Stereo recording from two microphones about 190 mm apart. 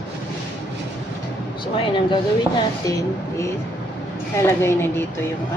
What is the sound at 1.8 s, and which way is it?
Speech, 25° left (ahead or behind).